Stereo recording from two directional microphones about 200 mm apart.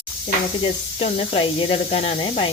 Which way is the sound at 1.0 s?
30° left (ahead or behind).